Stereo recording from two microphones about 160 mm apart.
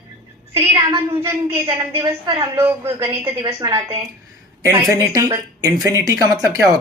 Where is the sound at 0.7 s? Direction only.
15° right (ahead or behind).